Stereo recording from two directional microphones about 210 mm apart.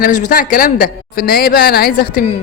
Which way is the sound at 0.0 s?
40° left (ahead or behind).